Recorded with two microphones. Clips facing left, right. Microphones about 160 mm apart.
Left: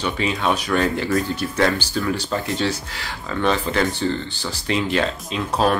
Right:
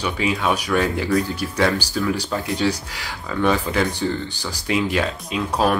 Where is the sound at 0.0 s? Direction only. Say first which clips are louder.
Even; 10° right (ahead or behind).